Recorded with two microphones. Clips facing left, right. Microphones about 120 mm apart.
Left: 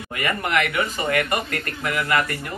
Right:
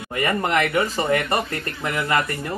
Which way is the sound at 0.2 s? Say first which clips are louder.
Right 2 dB; 30° right (ahead or behind).